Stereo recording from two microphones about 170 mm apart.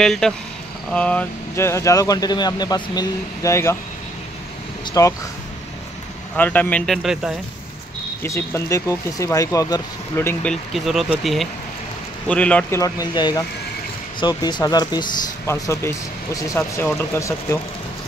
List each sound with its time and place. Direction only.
0.0 s speech: 5° left (ahead or behind)
5.0 s speech: 20° left (ahead or behind)
6.3 s speech: 10° left (ahead or behind)
8.2 s speech: 15° left (ahead or behind)
10.5 s speech: centre (ahead or behind)
12.8 s speech: 25° left (ahead or behind)